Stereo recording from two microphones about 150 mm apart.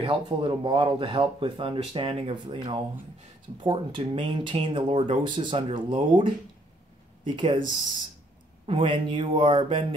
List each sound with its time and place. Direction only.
0.0 s speech: 35° right (ahead or behind)